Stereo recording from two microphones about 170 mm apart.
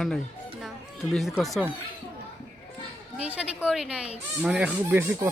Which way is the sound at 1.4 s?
Centre (ahead or behind).